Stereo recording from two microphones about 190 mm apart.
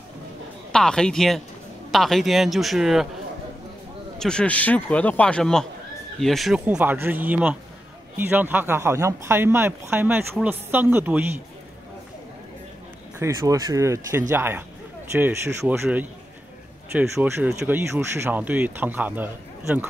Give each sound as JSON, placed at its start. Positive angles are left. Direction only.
{"t": 0.7, "sound": "speech", "side_deg": 5}
{"t": 4.2, "sound": "a man's voice", "side_deg": 5}
{"t": 13.2, "sound": "speech", "side_deg": -15}